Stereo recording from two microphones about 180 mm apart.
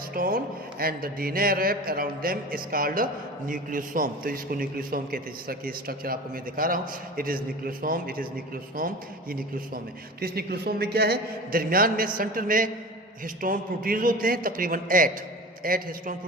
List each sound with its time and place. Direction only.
0.1 s speech: 50° right (ahead or behind)
9.3 s speech: 55° right (ahead or behind)